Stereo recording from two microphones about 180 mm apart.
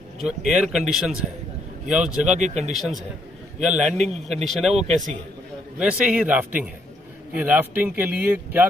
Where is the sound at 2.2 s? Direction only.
40° right (ahead or behind).